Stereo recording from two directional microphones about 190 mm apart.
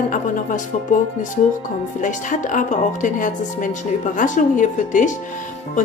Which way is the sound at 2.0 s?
40° left (ahead or behind).